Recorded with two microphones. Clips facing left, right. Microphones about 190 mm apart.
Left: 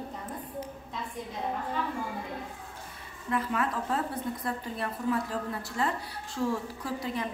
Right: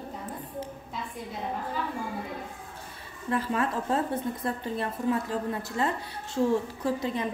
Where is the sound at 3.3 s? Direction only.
30° right (ahead or behind).